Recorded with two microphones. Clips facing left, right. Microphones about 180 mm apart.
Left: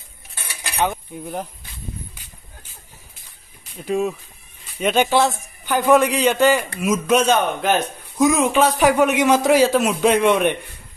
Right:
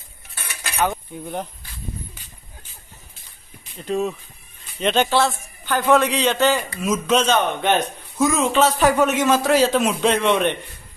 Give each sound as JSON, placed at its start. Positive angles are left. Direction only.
{"t": 0.5, "sound": "cutlery", "side_deg": 15}
{"t": 1.1, "sound": "speech", "side_deg": 5}
{"t": 3.7, "sound": "a man's voice", "side_deg": 10}